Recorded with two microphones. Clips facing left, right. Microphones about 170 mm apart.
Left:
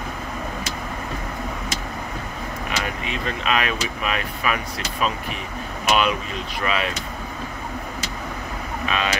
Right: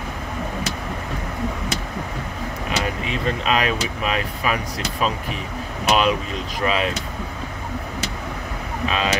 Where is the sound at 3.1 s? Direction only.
35° right (ahead or behind).